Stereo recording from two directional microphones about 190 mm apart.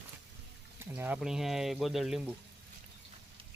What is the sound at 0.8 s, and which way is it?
Speech, 10° right (ahead or behind).